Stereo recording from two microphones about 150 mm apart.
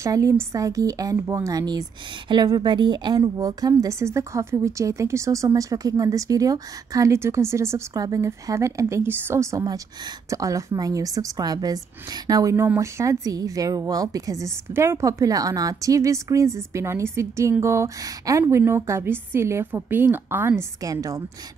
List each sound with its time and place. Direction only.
0.0 s a woman's voice: 20° right (ahead or behind)